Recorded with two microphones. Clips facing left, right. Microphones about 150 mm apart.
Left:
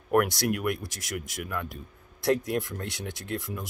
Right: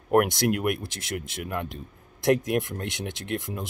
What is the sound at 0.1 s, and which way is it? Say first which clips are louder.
Speech: right 3 dB; 25° right (ahead or behind).